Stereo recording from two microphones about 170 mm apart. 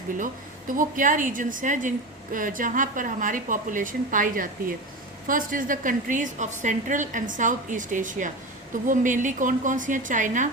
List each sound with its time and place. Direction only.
0.7 s a woman's voice: 50° right (ahead or behind)